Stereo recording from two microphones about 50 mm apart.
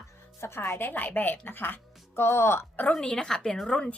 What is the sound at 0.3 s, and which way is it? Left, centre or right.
Speech, left.